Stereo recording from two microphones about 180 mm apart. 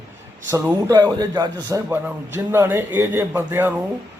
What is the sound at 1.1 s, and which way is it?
A man's voice, 20° right (ahead or behind).